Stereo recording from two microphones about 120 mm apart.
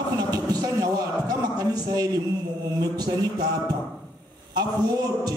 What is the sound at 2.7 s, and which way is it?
A man's voice, 30° right (ahead or behind).